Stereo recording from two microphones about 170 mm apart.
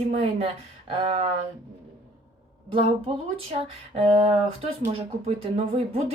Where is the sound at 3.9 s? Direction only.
35° right (ahead or behind).